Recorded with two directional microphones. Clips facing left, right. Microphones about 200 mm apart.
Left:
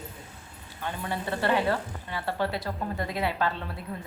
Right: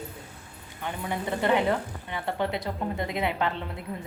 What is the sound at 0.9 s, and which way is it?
Speech, 15° right (ahead or behind).